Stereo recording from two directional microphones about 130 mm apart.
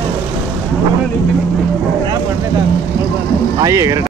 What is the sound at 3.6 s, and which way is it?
Speech, 25° right (ahead or behind).